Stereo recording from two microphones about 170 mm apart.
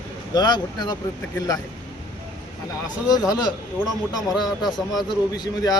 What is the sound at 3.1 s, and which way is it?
Speech, 20° left (ahead or behind).